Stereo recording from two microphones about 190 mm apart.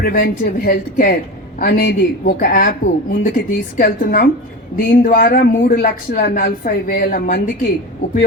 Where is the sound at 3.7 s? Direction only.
50° left (ahead or behind).